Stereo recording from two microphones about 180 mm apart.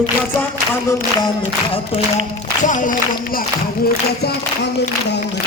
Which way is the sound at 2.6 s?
45° left (ahead or behind).